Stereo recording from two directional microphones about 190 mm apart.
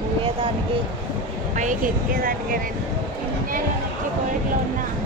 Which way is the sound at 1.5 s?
40° right (ahead or behind).